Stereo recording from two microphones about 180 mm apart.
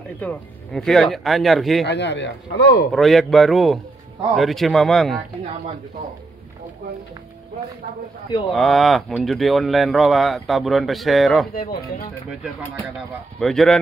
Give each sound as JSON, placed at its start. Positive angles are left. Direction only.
{"t": 0.2, "sound": "speech", "side_deg": 5}
{"t": 1.9, "sound": "speech", "side_deg": 75}
{"t": 2.9, "sound": "speech", "side_deg": 0}
{"t": 8.5, "sound": "speech", "side_deg": 0}
{"t": 12.9, "sound": "speech", "side_deg": 0}